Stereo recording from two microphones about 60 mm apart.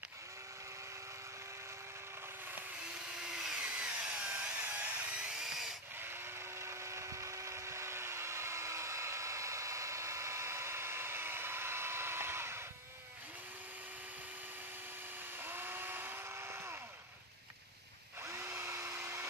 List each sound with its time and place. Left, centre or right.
3.2 s tools: centre
3.5 s tools: right
6.6 s tools: right
15.4 s chainsaw: right
18.2 s drill: right